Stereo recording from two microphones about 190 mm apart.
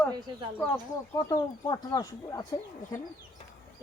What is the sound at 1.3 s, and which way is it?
Speech, 20° left (ahead or behind).